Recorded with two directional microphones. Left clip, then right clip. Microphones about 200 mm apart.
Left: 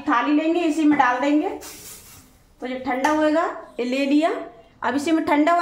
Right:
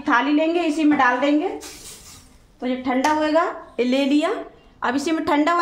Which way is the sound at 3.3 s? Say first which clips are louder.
Right 1 dB; 40° right (ahead or behind).